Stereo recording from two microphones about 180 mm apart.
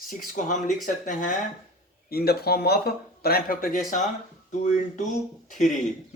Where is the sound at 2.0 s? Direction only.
60° left (ahead or behind); by 5.5 s 40° left (ahead or behind).